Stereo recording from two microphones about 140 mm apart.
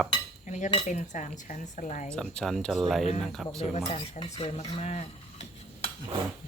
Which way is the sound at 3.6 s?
45° left (ahead or behind).